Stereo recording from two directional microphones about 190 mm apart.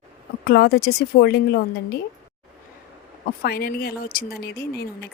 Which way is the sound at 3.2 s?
50° left (ahead or behind).